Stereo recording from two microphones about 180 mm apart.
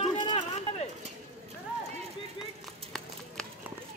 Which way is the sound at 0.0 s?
35° left (ahead or behind).